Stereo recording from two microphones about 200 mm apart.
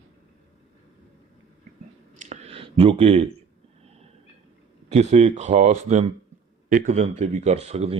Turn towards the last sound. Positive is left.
turn(degrees=-30)  # may be behind; listen again after turning